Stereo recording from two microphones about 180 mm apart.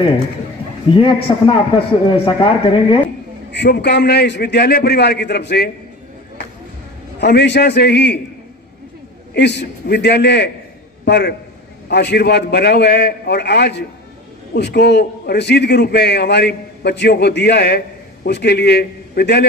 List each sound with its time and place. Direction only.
0.8 s speech: 30° left (ahead or behind)
3.5 s a man's voice: 70° left (ahead or behind)
7.2 s a man's voice: 70° left (ahead or behind)
9.3 s a man's voice: 70° left (ahead or behind)